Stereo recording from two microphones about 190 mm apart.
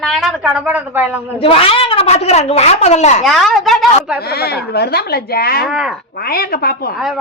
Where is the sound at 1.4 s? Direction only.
30° left (ahead or behind).